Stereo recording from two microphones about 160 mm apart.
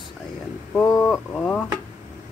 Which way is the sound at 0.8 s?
15° left (ahead or behind).